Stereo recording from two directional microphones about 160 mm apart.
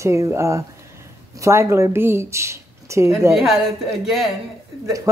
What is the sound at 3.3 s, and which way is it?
Speech, centre (ahead or behind).